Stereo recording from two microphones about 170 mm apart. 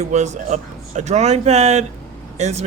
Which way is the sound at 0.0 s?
40° right (ahead or behind).